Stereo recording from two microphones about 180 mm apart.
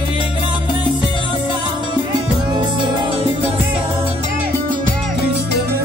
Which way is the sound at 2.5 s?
25° right (ahead or behind).